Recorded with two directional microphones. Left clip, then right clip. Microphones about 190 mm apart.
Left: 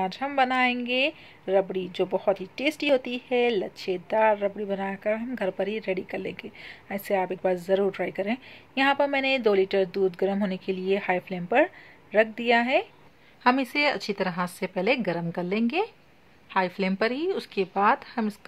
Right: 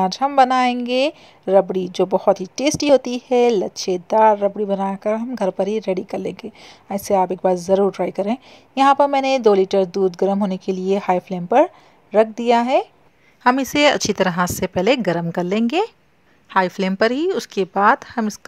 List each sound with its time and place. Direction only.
0.0 s a woman's voice: 40° right (ahead or behind)